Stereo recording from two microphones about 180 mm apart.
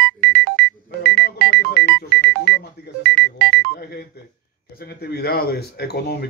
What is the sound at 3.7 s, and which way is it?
Telephone dialing, 60° left (ahead or behind).